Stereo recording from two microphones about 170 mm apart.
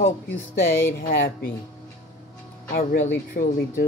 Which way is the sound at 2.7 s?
65° left (ahead or behind).